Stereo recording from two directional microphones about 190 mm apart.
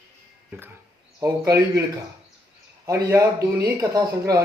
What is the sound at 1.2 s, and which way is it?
Speech, 15° right (ahead or behind).